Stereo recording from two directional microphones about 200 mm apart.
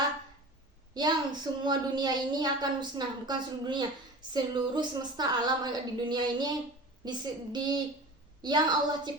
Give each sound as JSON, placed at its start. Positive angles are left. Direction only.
{"t": 0.9, "sound": "a woman's voice", "side_deg": -20}